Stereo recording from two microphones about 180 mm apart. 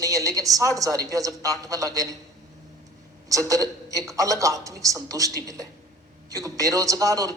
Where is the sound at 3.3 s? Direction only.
20° right (ahead or behind).